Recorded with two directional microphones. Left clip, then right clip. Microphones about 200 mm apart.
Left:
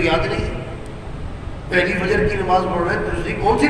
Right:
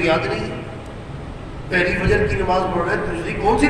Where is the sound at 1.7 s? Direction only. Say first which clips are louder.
Even; 5° right (ahead or behind).